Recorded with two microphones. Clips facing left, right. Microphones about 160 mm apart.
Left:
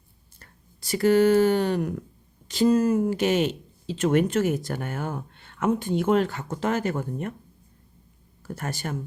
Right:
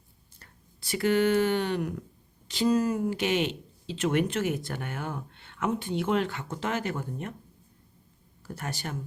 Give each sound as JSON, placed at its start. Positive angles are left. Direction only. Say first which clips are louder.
{"t": 0.3, "sound": "speech", "louder": "left 2 dB", "side_deg": 40}
{"t": 8.5, "sound": "speech", "louder": "left 4 dB", "side_deg": 50}